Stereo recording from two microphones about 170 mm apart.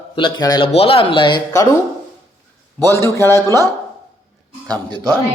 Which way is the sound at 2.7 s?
15° left (ahead or behind).